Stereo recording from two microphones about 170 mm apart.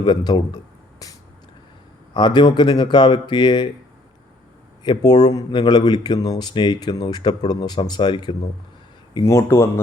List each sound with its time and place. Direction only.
0.0 s a sound: 25° left (ahead or behind)
2.1 s speech: 25° left (ahead or behind)
4.8 s speech: 25° left (ahead or behind)
9.1 s speech: 15° left (ahead or behind)